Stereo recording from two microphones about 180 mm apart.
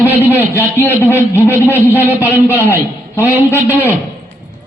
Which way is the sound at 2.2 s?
15° left (ahead or behind).